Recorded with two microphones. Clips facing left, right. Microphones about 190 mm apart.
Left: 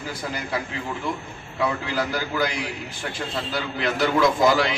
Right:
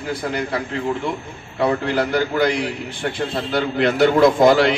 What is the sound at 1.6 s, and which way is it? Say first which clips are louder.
A man's voice: right 6 dB; 60° right (ahead or behind).